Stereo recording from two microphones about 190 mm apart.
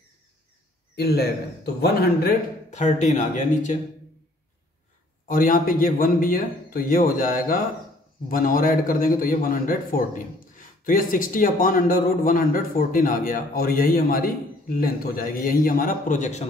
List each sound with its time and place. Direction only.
0.9 s speech: 60° left (ahead or behind)
2.7 s speech: 40° left (ahead or behind)
5.3 s a man's voice: 45° left (ahead or behind)